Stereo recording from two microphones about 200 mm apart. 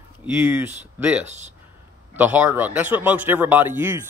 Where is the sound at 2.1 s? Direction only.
10° right (ahead or behind).